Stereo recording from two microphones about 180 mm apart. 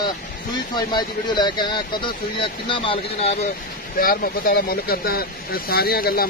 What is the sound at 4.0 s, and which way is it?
Speech, 55° left (ahead or behind).